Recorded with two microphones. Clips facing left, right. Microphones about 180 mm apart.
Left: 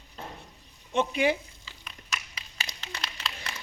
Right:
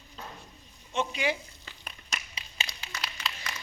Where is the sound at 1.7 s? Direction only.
55° right (ahead or behind).